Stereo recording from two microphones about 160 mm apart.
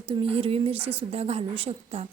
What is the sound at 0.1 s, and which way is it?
Speech, 35° right (ahead or behind).